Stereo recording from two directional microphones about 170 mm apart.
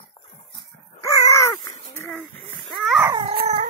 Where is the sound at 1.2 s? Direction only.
20° left (ahead or behind).